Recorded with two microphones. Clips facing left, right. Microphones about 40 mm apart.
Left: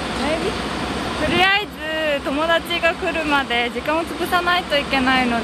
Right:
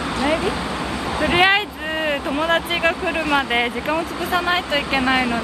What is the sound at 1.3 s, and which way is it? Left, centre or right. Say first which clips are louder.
Speech: right 1 dB; centre.